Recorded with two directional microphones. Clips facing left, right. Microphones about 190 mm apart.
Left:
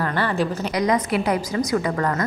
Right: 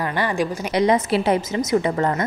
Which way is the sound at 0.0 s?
15° right (ahead or behind).